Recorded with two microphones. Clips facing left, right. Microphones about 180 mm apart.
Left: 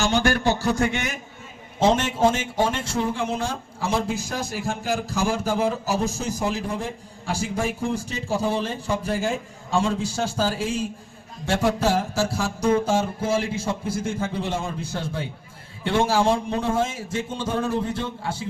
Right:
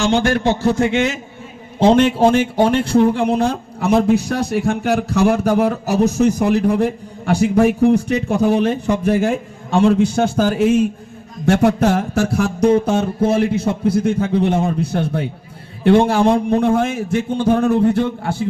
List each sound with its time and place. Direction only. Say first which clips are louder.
0.3 s speech: right 6 dB; 25° right (ahead or behind)
1.8 s speech: right 7 dB; 60° right (ahead or behind)